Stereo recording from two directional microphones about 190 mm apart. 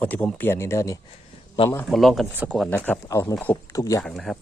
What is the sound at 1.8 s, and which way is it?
Speech, centre (ahead or behind).